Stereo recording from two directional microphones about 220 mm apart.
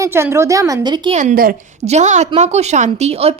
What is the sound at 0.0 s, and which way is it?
A woman's voice, 10° right (ahead or behind).